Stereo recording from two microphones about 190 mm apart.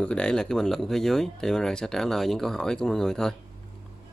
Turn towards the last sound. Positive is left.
turn(degrees=5)  # may be behind; listen again after turning